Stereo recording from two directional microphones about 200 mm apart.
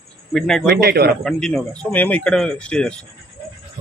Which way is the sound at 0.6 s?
50° right (ahead or behind).